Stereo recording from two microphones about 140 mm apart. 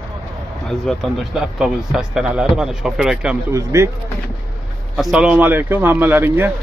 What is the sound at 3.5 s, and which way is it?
Speech, 20° right (ahead or behind).